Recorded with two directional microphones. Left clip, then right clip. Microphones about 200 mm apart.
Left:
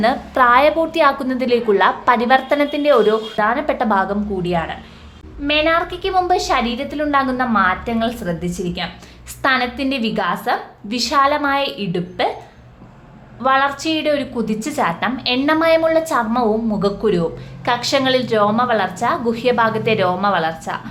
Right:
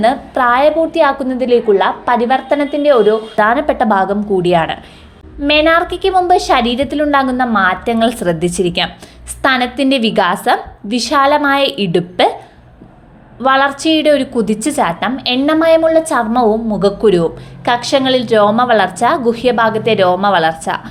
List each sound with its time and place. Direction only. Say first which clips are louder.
0.0 s a woman's voice: right 2 dB; 10° right (ahead or behind)
3.3 s a woman's voice: right 6 dB; 25° right (ahead or behind)
4.4 s a woman's voice: right 9 dB; 35° right (ahead or behind)
9.4 s a woman's voice: right 4 dB; 25° right (ahead or behind)
13.4 s a woman's voice: right 4 dB; 20° right (ahead or behind)